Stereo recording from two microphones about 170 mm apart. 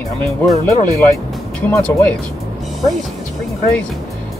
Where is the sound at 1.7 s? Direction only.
10° left (ahead or behind).